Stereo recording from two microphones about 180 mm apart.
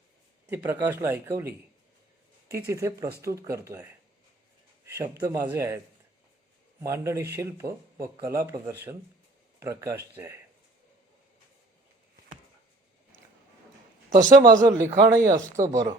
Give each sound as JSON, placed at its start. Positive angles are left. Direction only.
{"t": 0.5, "sound": "speech", "side_deg": -10}
{"t": 4.9, "sound": "speech", "side_deg": -20}
{"t": 14.3, "sound": "speech", "side_deg": -20}